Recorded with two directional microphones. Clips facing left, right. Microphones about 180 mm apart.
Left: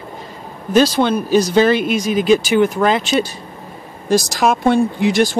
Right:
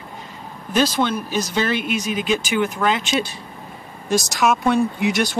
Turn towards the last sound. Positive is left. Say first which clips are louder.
# left 4 dB
turn(degrees=30)  # may be behind; listen again after turning